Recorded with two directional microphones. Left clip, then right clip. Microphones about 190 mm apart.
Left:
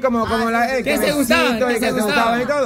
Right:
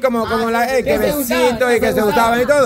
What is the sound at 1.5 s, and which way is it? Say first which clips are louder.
A man's voice: right 4 dB; 20° right (ahead or behind).